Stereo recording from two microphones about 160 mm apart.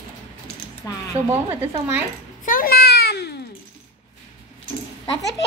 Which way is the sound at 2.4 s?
65° left (ahead or behind).